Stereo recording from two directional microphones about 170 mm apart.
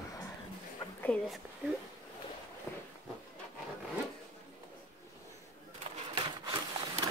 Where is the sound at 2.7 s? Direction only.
15° left (ahead or behind).